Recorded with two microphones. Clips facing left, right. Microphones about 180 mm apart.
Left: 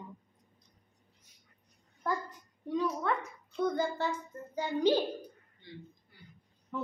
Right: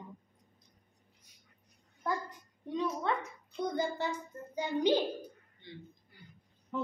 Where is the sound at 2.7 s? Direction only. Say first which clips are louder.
Left 2 dB; 25° right (ahead or behind).